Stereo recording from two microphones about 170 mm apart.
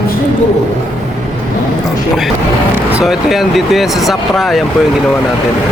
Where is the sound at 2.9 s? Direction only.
Centre (ahead or behind).